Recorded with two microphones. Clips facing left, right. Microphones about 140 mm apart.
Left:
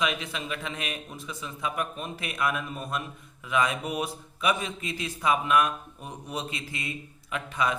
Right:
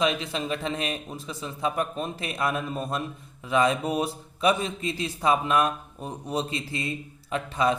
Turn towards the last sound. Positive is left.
turn(degrees=-30)  # may be behind; listen again after turning